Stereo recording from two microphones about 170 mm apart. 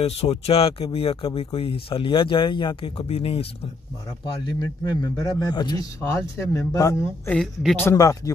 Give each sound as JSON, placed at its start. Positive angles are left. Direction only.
{"t": 0.0, "sound": "speech", "side_deg": 35}
{"t": 4.5, "sound": "a man's voice", "side_deg": 20}
{"t": 7.2, "sound": "speech", "side_deg": 5}
{"t": 7.9, "sound": "a man's voice", "side_deg": 20}